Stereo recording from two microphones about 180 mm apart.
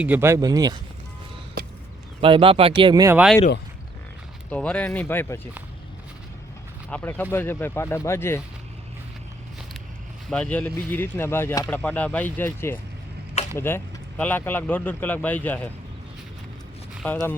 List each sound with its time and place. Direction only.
0.0 s speech: 10° right (ahead or behind)
2.2 s speech: 30° right (ahead or behind)
2.9 s speech: 20° right (ahead or behind)
4.4 s speech: 5° left (ahead or behind)
6.9 s speech: 10° left (ahead or behind)
10.2 s speech: 5° left (ahead or behind)
17.0 s speech: 10° left (ahead or behind)